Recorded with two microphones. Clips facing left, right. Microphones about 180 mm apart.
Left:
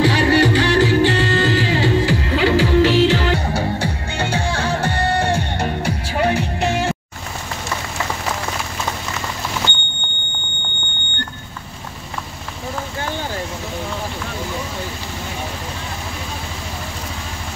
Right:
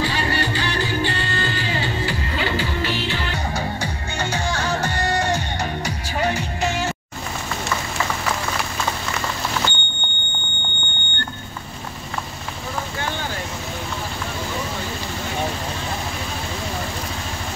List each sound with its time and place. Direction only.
0.0 s music: 80° left
4.3 s music: 30° left (ahead or behind)
5.3 s music: 55° left (ahead or behind)